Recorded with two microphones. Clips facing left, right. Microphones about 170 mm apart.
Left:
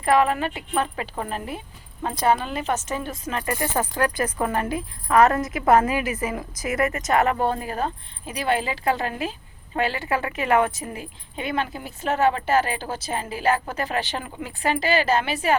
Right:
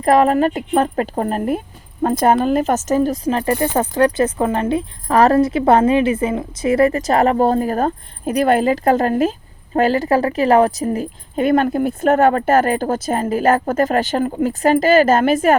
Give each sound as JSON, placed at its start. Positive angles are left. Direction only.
{"t": 0.0, "sound": "a woman's voice", "side_deg": -40}